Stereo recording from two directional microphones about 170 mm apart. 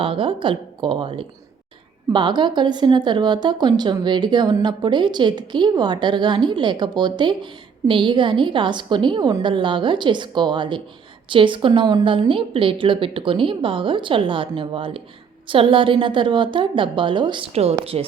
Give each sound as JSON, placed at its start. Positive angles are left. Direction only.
{"t": 0.0, "sound": "a woman's voice", "side_deg": -30}